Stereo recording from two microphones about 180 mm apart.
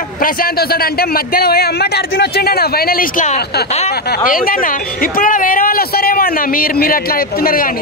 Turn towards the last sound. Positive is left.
turn(degrees=50)  # may be behind; listen again after turning